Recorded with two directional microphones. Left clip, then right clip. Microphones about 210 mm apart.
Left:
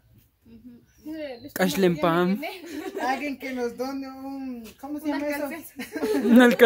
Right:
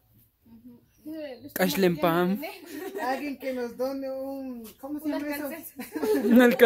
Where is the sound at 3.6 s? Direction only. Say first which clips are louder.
Left 2 dB; 25° left (ahead or behind).